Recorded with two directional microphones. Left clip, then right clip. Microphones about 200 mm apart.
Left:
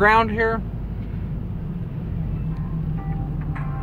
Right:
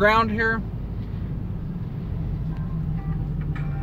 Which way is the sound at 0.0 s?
15° left (ahead or behind).